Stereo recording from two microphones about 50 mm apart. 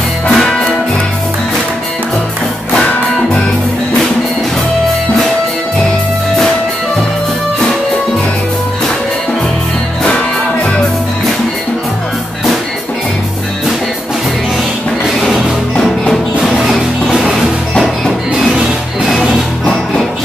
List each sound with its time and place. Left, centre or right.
0.3 s music: centre
10.0 s music: left
15.0 s music: centre
16.5 s music: centre
17.7 s music: centre